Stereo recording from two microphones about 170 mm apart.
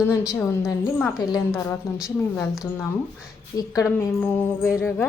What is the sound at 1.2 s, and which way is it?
Speech, 25° left (ahead or behind).